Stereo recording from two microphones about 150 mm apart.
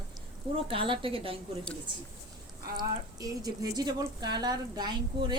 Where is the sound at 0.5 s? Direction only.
35° right (ahead or behind).